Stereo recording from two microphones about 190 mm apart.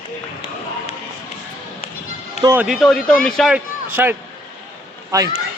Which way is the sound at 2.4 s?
15° right (ahead or behind).